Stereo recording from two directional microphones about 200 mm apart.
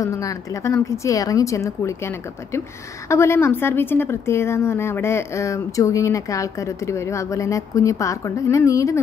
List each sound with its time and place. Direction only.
0.0 s a woman's voice: 15° left (ahead or behind)